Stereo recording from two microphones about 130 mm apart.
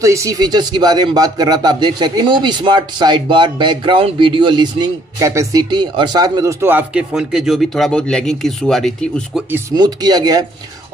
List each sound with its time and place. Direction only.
0.0 s speech: 25° right (ahead or behind)
5.3 s speech: 25° right (ahead or behind)
6.6 s speech: 15° right (ahead or behind); by 9.4 s centre (ahead or behind)
9.8 s speech: 30° right (ahead or behind)